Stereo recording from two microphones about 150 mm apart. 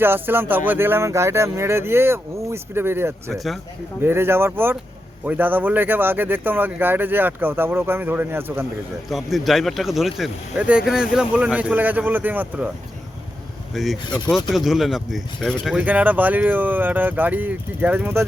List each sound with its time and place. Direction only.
0.0 s speech: 15° right (ahead or behind)
3.3 s speech: centre (ahead or behind)
4.0 s speech: 15° right (ahead or behind)
9.0 s speech: centre (ahead or behind)
13.7 s speech: centre (ahead or behind)